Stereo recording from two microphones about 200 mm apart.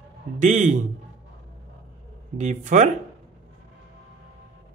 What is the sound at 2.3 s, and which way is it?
Speech, 35° right (ahead or behind).